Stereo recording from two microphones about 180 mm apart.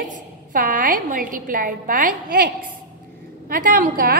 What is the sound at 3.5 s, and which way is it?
Speech, 50° right (ahead or behind).